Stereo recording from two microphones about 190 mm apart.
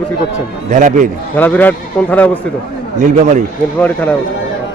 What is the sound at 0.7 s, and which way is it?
Speech, 45° right (ahead or behind).